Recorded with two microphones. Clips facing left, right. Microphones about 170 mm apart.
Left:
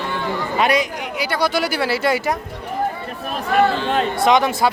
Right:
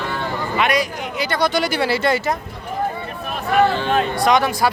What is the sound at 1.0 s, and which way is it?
Speech, 10° left (ahead or behind).